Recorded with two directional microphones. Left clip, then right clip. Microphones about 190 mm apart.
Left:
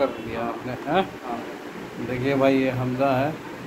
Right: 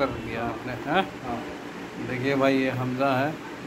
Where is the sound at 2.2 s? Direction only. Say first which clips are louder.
Left 2 dB; centre (ahead or behind).